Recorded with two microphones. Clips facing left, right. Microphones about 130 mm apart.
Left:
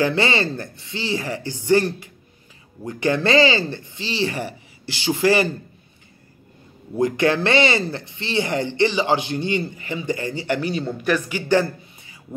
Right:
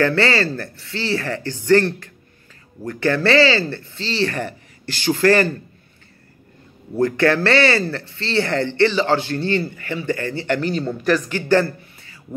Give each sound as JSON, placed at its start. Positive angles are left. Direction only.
{"t": 0.0, "sound": "speech", "side_deg": 15}
{"t": 7.0, "sound": "speech", "side_deg": 15}